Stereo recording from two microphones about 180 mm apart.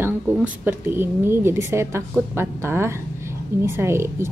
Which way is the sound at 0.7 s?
10° right (ahead or behind).